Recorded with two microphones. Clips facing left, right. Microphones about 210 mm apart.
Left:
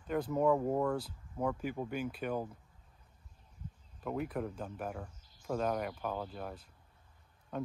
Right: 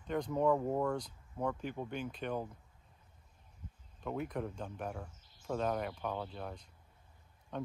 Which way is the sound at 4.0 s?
5° left (ahead or behind).